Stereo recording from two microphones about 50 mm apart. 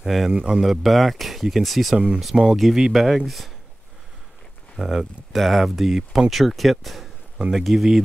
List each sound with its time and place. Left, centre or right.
0.0 s a man's voice: centre
0.3 s speech: centre
2.0 s speech: right
2.7 s speech: centre
4.7 s speech: centre